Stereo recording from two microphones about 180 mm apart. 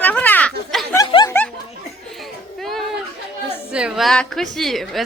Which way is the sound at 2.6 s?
Centre (ahead or behind).